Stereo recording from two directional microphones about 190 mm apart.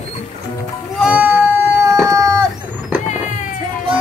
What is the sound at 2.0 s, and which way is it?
Vehicle, 15° right (ahead or behind).